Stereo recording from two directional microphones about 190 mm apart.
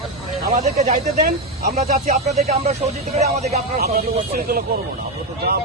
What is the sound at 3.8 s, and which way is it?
Speech, 50° right (ahead or behind).